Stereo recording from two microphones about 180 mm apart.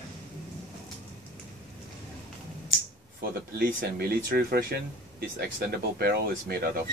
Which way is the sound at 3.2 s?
60° right (ahead or behind).